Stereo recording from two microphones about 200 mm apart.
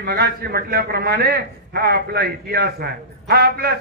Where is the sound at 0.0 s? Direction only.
50° right (ahead or behind).